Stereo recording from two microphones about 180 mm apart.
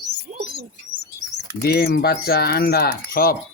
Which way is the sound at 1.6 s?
60° left (ahead or behind).